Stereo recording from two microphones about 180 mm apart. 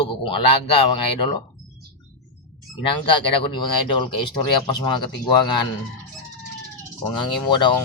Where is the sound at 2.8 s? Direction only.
30° left (ahead or behind).